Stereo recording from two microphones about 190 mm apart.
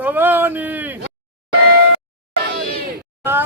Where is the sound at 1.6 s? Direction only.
60° right (ahead or behind).